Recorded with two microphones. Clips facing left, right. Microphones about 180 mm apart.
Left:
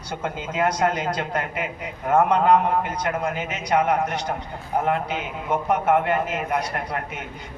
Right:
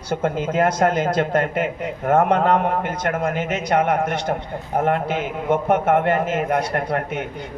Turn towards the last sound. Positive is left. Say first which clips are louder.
# right 6 dB
turn(degrees=-50)  # may be behind; listen again after turning